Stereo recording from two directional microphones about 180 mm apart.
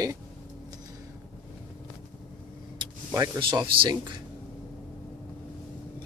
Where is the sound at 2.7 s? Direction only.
20° right (ahead or behind).